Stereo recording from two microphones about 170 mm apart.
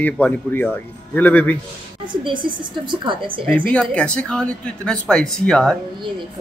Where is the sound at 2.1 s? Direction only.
30° right (ahead or behind).